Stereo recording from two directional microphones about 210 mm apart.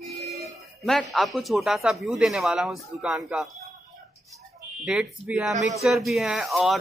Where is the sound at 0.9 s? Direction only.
Centre (ahead or behind).